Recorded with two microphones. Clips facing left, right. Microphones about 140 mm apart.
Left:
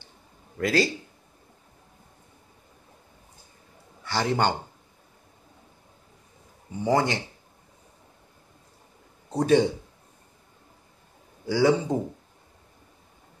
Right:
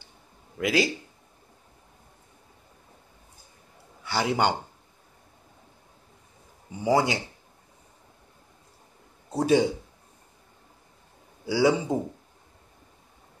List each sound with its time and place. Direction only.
0.6 s speech: 10° right (ahead or behind)
4.0 s a man's voice: 10° right (ahead or behind)
6.8 s speech: 10° right (ahead or behind)
9.3 s speech: 10° right (ahead or behind)
11.4 s speech: 10° right (ahead or behind)